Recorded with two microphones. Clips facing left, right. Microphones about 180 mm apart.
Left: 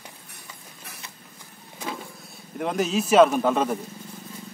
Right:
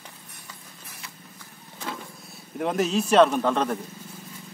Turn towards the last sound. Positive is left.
turn(degrees=5)  # may be behind; listen again after turning